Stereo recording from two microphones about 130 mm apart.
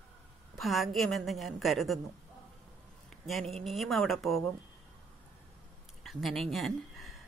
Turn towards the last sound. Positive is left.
turn(degrees=0)  # may be behind; listen again after turning